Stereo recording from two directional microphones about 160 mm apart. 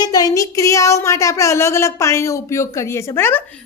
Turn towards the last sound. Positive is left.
turn(degrees=15)  # may be behind; listen again after turning